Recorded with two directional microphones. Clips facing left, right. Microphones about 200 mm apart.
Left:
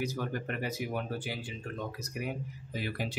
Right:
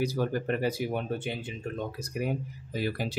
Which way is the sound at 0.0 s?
35° right (ahead or behind).